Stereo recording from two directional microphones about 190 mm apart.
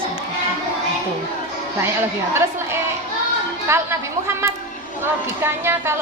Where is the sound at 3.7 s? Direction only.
15° right (ahead or behind).